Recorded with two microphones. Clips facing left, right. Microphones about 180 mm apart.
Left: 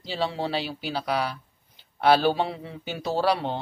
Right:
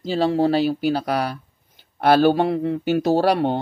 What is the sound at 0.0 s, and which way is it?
Speech, 45° right (ahead or behind).